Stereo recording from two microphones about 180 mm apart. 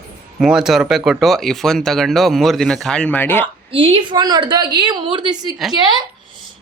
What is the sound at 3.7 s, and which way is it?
A woman's voice, 30° right (ahead or behind).